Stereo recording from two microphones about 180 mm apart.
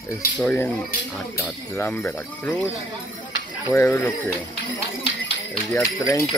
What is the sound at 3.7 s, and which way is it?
Speech, 10° left (ahead or behind).